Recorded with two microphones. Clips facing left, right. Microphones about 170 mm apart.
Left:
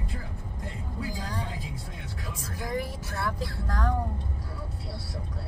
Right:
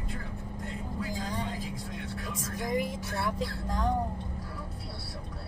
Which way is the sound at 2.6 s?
15° right (ahead or behind).